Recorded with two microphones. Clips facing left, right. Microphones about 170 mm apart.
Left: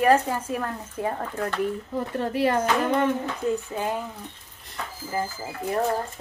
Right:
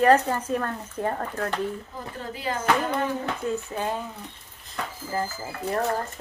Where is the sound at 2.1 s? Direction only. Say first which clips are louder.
Left 8 dB; 70° left (ahead or behind).